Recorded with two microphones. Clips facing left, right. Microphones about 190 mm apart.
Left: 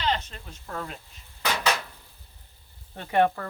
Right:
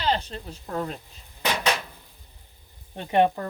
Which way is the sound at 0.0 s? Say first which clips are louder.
Right 3 dB; 35° right (ahead or behind).